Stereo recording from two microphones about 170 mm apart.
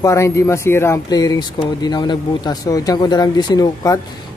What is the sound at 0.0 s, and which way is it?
A man's voice, 15° left (ahead or behind).